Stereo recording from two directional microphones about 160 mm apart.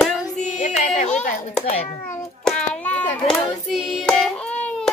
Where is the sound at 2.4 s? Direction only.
10° left (ahead or behind).